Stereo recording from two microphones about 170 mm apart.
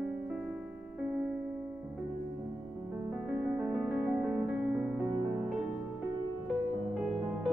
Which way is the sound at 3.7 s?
5° right (ahead or behind).